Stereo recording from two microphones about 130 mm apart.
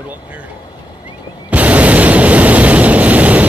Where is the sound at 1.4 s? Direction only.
10° right (ahead or behind).